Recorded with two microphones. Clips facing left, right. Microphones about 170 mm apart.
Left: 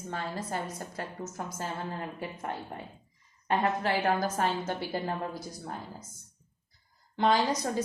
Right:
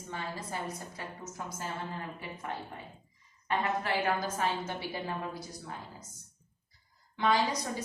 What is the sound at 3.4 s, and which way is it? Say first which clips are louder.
A woman's voice: left 4 dB; 45° left (ahead or behind).